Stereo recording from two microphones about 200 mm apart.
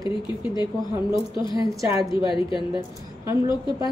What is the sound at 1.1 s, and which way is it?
A woman's voice, 25° left (ahead or behind).